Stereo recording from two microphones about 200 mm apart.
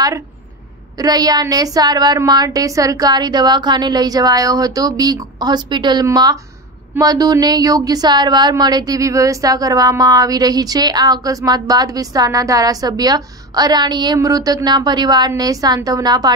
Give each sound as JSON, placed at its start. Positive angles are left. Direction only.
{"t": 0.9, "sound": "a woman's voice", "side_deg": -20}